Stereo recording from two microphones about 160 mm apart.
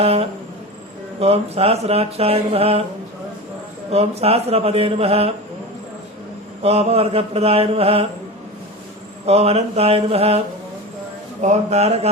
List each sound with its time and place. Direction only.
0.0 s mantra: 40° right (ahead or behind)
3.9 s mantra: 40° right (ahead or behind)
6.6 s mantra: 40° right (ahead or behind)
9.2 s mantra: 40° right (ahead or behind)
11.3 s speech: 45° right (ahead or behind)